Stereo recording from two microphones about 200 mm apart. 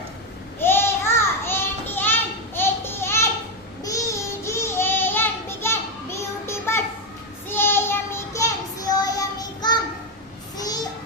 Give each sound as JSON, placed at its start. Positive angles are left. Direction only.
{"t": 0.6, "sound": "children playing", "side_deg": 10}
{"t": 2.6, "sound": "a sound", "side_deg": 10}
{"t": 3.8, "sound": "child singing", "side_deg": 15}